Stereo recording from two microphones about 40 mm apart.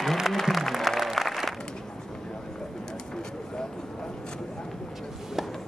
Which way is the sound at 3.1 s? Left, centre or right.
Centre.